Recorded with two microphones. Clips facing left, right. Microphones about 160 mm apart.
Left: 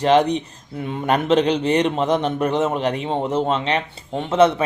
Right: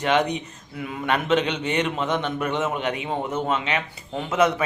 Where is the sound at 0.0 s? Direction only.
35° left (ahead or behind).